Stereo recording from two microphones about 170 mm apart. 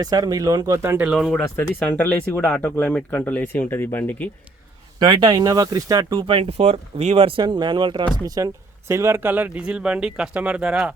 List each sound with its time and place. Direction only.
0.0 s speech: 20° right (ahead or behind); by 4.3 s 10° left (ahead or behind)
4.9 s speech: 25° right (ahead or behind); by 10.9 s 5° right (ahead or behind)